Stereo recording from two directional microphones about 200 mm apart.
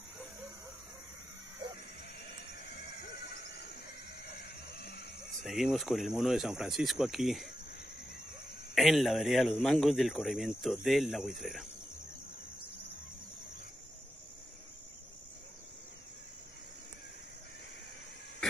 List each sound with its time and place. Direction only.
2.2 s a sound: 55° left (ahead or behind)
5.4 s a man's voice: centre (ahead or behind)
8.7 s a man's voice: centre (ahead or behind)